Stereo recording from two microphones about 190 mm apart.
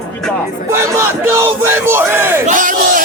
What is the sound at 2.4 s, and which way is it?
Battle cry, 45° right (ahead or behind).